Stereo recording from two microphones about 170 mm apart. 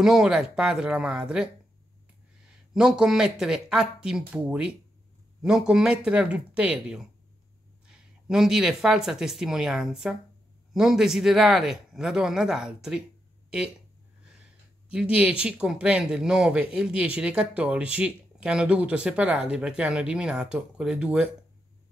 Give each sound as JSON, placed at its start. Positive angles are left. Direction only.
{"t": 0.0, "sound": "speech", "side_deg": -5}
{"t": 2.7, "sound": "speech", "side_deg": 0}
{"t": 14.9, "sound": "speech", "side_deg": -5}